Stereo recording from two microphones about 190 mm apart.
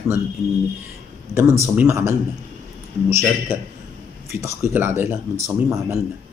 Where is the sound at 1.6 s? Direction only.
10° right (ahead or behind).